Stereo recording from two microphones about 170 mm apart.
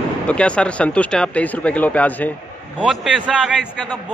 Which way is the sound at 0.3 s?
5° left (ahead or behind).